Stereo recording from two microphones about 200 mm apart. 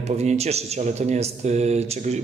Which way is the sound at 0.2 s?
35° right (ahead or behind).